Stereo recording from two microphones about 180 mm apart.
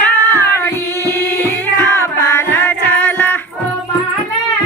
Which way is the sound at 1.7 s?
15° left (ahead or behind).